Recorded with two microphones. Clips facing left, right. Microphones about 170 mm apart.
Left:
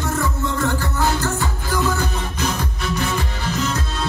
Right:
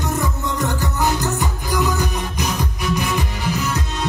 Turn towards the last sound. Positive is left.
turn(degrees=-10)  # may be behind; listen again after turning